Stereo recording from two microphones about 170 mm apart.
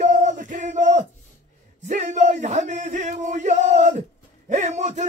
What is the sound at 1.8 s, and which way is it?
Music, 45° right (ahead or behind).